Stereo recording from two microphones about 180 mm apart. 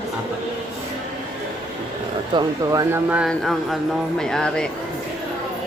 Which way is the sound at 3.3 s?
Centre (ahead or behind).